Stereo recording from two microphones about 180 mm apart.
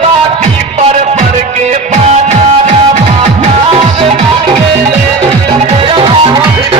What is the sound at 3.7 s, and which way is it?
Music, 30° right (ahead or behind).